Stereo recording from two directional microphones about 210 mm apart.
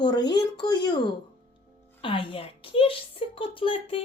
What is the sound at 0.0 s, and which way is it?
Speech, 20° left (ahead or behind).